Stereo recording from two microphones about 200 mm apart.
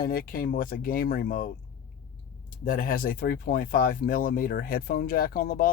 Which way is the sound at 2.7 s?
45° left (ahead or behind).